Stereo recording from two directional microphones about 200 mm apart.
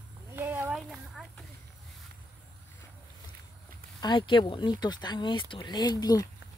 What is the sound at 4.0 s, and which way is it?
Speech, 25° left (ahead or behind).